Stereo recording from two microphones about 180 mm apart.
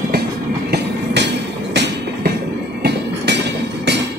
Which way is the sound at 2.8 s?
70° right (ahead or behind).